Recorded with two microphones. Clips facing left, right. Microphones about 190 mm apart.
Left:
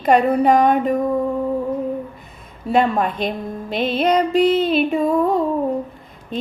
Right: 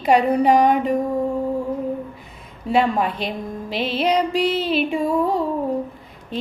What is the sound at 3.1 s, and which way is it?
Music, 50° left (ahead or behind).